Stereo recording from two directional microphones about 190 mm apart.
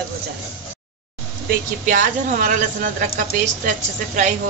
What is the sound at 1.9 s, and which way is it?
A woman's voice, 45° right (ahead or behind).